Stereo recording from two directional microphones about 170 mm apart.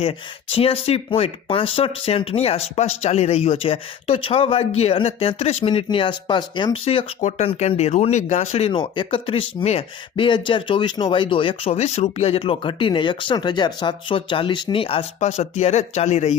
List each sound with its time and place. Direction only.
0.0 s speech: 35° left (ahead or behind)
7.2 s speech: 45° left (ahead or behind)